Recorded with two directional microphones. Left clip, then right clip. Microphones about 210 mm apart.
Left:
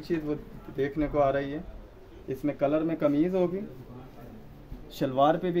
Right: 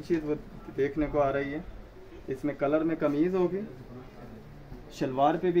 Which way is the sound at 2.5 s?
40° left (ahead or behind).